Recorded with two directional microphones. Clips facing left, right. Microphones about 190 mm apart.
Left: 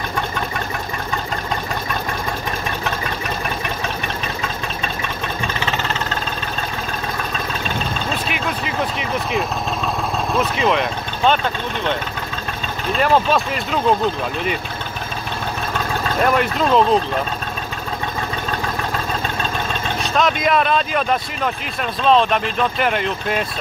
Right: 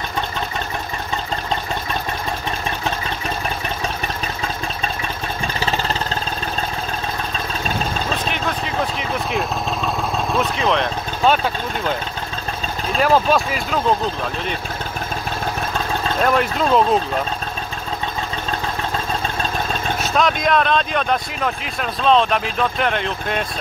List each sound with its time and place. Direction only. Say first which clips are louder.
8.3 s vehicle: even; 5° left (ahead or behind)
10.3 s speech: left 2 dB; centre (ahead or behind)
16.2 s speech: left 1 dB; centre (ahead or behind)
20.0 s speech: left 1 dB; centre (ahead or behind)